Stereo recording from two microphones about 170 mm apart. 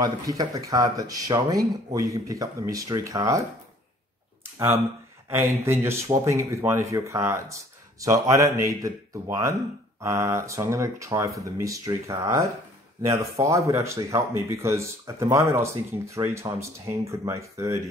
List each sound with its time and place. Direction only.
0.0 s speech: 20° right (ahead or behind)
5.7 s speech: 15° right (ahead or behind)